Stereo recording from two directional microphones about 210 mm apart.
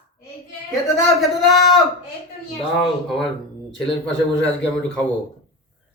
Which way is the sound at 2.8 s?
Centre (ahead or behind).